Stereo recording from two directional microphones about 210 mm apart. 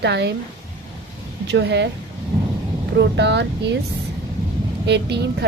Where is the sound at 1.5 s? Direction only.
55° right (ahead or behind).